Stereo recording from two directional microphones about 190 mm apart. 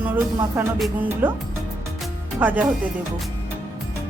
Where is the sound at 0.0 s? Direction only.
10° right (ahead or behind).